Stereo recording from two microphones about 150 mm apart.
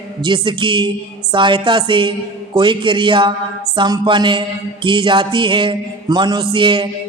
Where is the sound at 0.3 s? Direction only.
35° right (ahead or behind).